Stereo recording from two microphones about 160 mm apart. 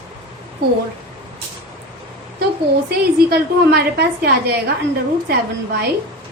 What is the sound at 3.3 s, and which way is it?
A woman's voice, 85° right.